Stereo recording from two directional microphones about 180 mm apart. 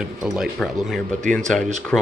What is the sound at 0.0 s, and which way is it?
Speech, 5° right (ahead or behind).